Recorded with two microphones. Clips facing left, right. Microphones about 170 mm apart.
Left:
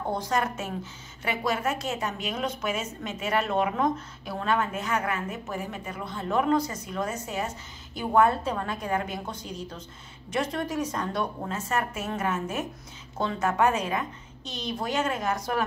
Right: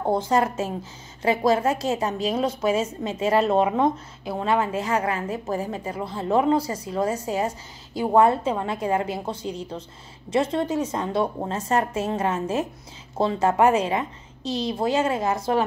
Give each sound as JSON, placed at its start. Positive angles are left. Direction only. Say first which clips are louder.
{"t": 0.0, "sound": "a woman's voice", "louder": "right 6 dB", "side_deg": -30}